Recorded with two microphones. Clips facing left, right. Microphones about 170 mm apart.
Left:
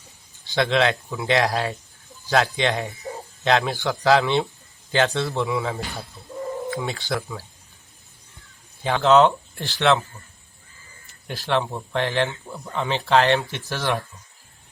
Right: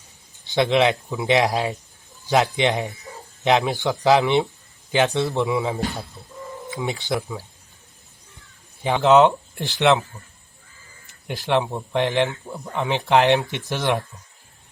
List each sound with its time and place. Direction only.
0.4 s speech: 15° right (ahead or behind)
8.8 s speech: 15° right (ahead or behind)
11.3 s speech: 15° right (ahead or behind)